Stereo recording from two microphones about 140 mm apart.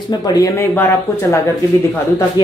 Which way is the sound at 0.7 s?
15° left (ahead or behind).